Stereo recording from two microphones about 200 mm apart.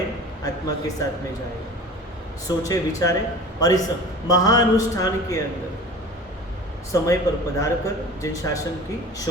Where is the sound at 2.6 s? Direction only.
15° left (ahead or behind).